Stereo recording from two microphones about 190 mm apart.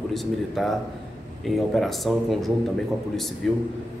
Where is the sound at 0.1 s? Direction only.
Centre (ahead or behind).